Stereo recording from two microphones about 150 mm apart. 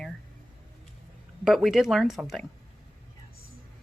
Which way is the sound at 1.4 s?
Centre (ahead or behind).